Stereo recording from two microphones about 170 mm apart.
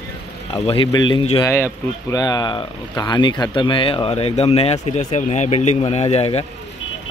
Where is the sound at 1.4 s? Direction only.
15° left (ahead or behind).